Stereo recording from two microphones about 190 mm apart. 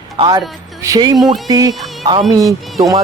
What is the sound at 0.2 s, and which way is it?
A man's voice, 20° right (ahead or behind).